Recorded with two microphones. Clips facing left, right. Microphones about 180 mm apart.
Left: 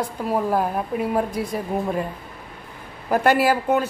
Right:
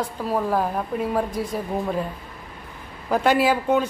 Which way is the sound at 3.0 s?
10° left (ahead or behind).